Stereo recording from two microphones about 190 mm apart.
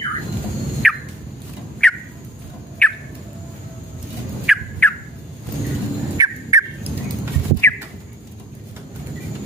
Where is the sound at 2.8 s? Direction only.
5° left (ahead or behind).